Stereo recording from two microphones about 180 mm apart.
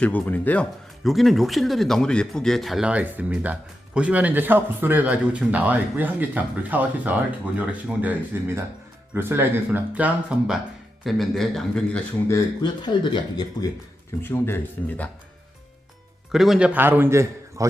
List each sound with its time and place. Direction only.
0.0 s a man's voice: 10° left (ahead or behind)
12.3 s speech: 25° left (ahead or behind)
14.2 s speech: 10° left (ahead or behind)
16.3 s speech: centre (ahead or behind)